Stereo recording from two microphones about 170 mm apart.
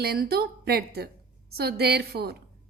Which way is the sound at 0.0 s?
65° right (ahead or behind).